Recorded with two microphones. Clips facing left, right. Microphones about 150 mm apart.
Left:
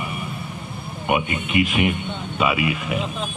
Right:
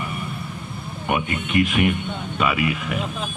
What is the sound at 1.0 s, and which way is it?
A man's voice, 10° left (ahead or behind).